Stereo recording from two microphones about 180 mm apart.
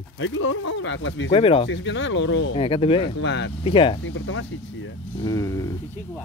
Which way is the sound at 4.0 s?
90° left.